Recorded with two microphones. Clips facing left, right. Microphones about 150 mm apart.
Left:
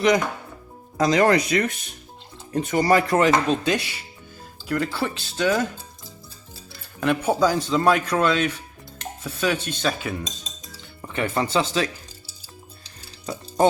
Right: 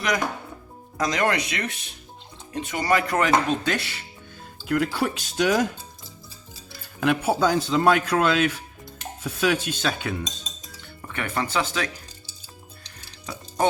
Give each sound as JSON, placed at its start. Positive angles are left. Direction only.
{"t": 0.9, "sound": "speech", "side_deg": 30}
{"t": 3.8, "sound": "speech", "side_deg": 15}
{"t": 4.5, "sound": "speech", "side_deg": 0}
{"t": 7.0, "sound": "a man's voice", "side_deg": -5}
{"t": 9.0, "sound": "dishes", "side_deg": -5}
{"t": 11.1, "sound": "speech", "side_deg": 25}